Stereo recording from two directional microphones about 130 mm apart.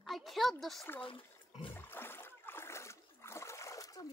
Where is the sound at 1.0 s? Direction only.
40° left (ahead or behind).